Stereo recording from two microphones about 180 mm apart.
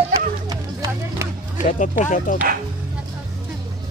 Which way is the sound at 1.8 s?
45° left (ahead or behind).